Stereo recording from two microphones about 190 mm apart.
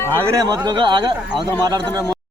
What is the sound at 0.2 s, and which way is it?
Speech, 15° right (ahead or behind).